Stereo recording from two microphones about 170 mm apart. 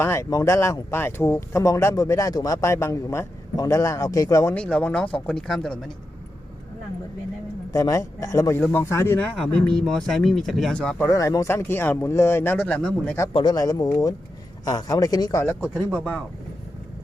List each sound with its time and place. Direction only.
0.0 s speech: 15° left (ahead or behind)
4.5 s speech: 5° left (ahead or behind)
7.7 s a man's voice: 20° left (ahead or behind)
9.2 s speech: 5° left (ahead or behind)
11.1 s speech: 20° left (ahead or behind)
13.3 s a man's voice: 25° left (ahead or behind)
15.6 s speech: 5° right (ahead or behind)